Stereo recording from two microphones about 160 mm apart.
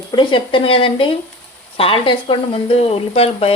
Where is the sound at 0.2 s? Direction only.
30° left (ahead or behind).